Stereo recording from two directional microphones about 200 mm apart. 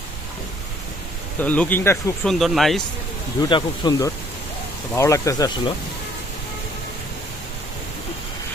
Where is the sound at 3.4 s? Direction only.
20° left (ahead or behind).